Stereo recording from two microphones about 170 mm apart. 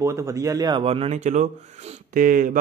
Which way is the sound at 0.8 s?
35° right (ahead or behind).